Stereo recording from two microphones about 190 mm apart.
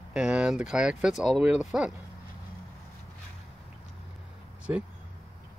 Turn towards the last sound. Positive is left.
turn(degrees=-10)  # may be behind; listen again after turning